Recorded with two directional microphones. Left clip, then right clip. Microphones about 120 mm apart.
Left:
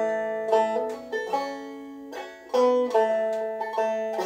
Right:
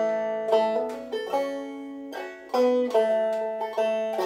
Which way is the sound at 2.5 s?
20° right (ahead or behind).